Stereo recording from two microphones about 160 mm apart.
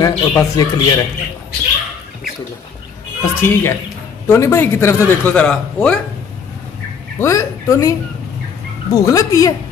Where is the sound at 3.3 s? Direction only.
15° left (ahead or behind).